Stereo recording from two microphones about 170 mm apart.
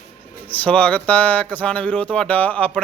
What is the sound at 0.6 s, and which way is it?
Speech, 10° left (ahead or behind).